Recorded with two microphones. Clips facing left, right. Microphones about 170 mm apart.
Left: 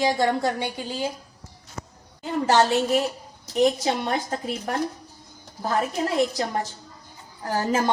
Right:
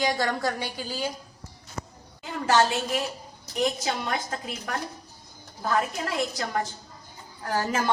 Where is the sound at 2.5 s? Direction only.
25° left (ahead or behind).